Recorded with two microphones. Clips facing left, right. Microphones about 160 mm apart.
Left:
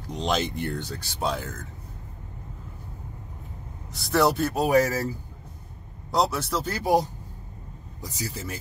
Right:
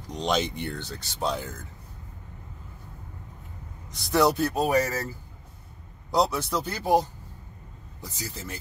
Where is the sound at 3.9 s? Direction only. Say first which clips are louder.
Even; centre (ahead or behind).